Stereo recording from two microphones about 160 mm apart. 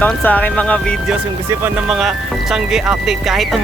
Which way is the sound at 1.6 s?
Centre (ahead or behind).